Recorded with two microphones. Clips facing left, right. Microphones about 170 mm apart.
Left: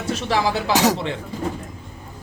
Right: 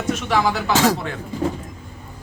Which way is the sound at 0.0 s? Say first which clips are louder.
Right 1 dB; 30° left (ahead or behind).